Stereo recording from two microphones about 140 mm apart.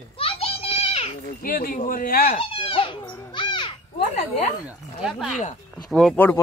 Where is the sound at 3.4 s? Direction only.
35° left (ahead or behind).